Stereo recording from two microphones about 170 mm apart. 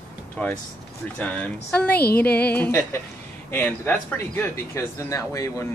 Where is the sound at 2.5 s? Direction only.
10° left (ahead or behind).